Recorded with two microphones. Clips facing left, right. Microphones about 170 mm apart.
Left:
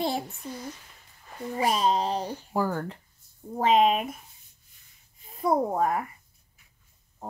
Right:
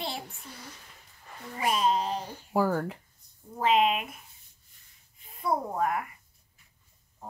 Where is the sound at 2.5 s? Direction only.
5° right (ahead or behind).